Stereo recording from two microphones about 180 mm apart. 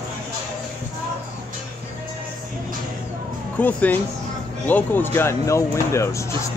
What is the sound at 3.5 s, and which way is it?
Speech, 10° left (ahead or behind).